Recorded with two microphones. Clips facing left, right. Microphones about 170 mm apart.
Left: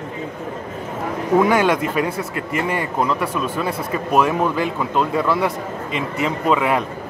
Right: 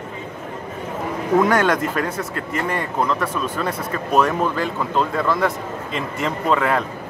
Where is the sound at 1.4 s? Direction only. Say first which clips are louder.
Left 1 dB; 5° left (ahead or behind).